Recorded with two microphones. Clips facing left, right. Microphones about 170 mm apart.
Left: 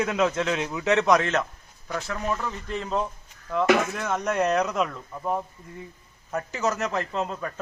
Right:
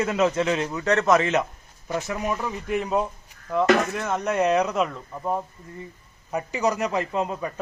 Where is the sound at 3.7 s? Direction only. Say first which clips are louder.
Even; centre (ahead or behind).